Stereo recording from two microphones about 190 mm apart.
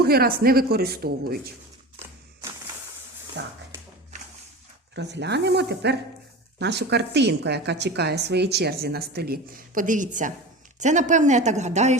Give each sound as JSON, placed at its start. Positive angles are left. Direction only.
{"t": 0.0, "sound": "speech", "side_deg": -55}
{"t": 3.4, "sound": "speech", "side_deg": -70}
{"t": 4.9, "sound": "a woman's voice", "side_deg": -65}